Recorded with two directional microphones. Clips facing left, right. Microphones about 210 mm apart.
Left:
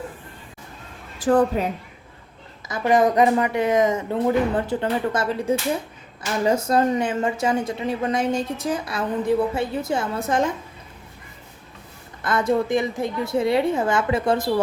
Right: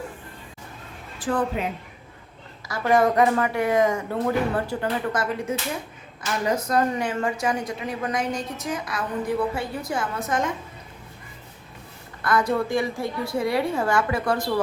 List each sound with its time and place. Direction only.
1.2 s speech: 40° left (ahead or behind)
2.6 s speech: 20° left (ahead or behind)
12.2 s speech: 25° left (ahead or behind)